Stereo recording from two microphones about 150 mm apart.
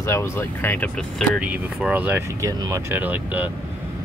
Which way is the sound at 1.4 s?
10° right (ahead or behind).